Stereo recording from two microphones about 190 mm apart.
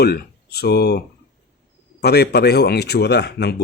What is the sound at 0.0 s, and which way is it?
Speech, 55° left (ahead or behind).